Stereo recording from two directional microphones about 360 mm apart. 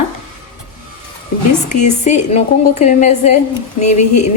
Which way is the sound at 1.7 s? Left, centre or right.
Centre.